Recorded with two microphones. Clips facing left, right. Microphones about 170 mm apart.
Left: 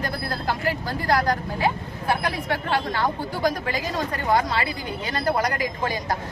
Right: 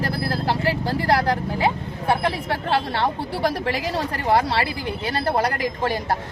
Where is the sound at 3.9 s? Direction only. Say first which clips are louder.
Right 1 dB; 30° right (ahead or behind).